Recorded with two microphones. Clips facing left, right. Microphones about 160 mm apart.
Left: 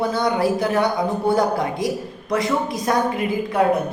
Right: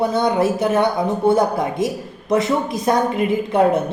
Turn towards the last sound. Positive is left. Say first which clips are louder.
# right 4 dB
turn(degrees=-25)  # may be behind; listen again after turning